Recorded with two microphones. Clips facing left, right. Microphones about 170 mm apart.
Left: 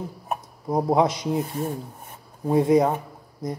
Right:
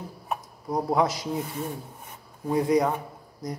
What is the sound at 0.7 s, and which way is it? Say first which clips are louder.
Speech: left 4 dB; 20° left (ahead or behind).